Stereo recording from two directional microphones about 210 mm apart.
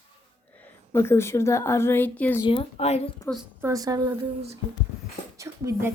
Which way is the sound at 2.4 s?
30° left (ahead or behind).